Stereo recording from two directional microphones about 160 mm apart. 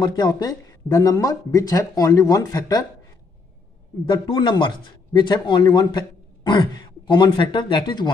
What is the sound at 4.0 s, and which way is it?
Speech, 30° left (ahead or behind).